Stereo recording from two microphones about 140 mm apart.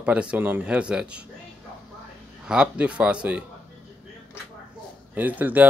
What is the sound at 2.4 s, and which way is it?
Speech, 10° right (ahead or behind).